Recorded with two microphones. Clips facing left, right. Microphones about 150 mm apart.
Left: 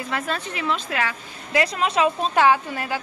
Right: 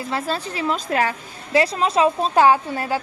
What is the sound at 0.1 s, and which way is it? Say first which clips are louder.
A woman's voice: right 3 dB; 30° right (ahead or behind).